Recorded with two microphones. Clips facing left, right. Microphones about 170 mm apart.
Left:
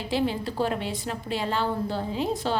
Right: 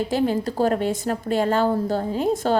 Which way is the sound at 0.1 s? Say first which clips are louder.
Right 5 dB; 45° right (ahead or behind).